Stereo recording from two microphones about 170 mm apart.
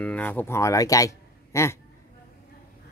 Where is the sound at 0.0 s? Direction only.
10° left (ahead or behind).